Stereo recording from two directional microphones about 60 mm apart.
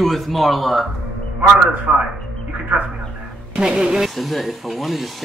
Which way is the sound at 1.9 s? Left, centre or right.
Right.